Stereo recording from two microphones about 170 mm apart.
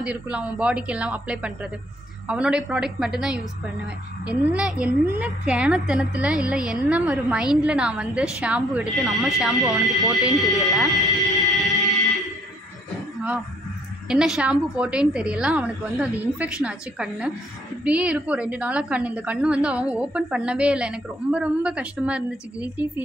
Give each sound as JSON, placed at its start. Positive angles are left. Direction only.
{"t": 0.0, "sound": "a woman's voice", "side_deg": -5}
{"t": 10.1, "sound": "speech", "side_deg": 20}
{"t": 10.7, "sound": "a sound", "side_deg": 0}
{"t": 14.0, "sound": "a woman's voice", "side_deg": -5}